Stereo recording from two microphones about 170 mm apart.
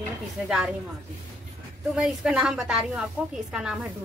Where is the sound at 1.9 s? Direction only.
Centre (ahead or behind).